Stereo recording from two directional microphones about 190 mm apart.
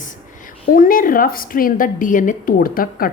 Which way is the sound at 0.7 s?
45° left (ahead or behind).